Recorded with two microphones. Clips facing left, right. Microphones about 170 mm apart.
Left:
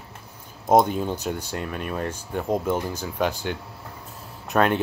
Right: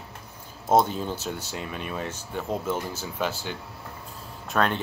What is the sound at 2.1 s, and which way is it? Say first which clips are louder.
Speech: left 5 dB; 15° left (ahead or behind).